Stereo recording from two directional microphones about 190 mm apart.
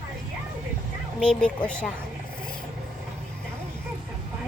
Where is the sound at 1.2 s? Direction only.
5° left (ahead or behind).